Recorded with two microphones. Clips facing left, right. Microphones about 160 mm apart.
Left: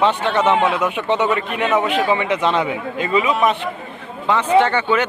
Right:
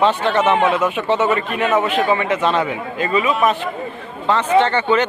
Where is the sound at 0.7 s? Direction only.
15° left (ahead or behind).